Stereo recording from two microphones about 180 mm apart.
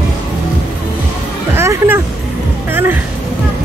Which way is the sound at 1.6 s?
15° right (ahead or behind).